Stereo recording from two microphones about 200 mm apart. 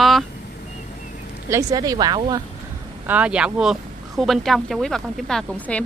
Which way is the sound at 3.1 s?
5° right (ahead or behind).